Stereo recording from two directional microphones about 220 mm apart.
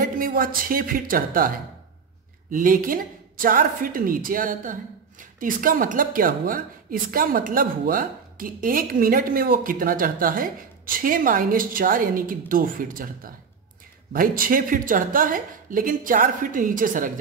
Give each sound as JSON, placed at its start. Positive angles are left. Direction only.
{"t": 0.0, "sound": "speech", "side_deg": -40}
{"t": 2.5, "sound": "speech", "side_deg": -40}